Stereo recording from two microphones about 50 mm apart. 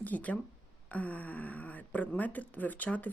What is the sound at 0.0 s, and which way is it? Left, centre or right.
Speech, left.